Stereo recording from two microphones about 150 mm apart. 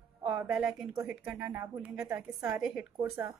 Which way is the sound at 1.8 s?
5° right (ahead or behind).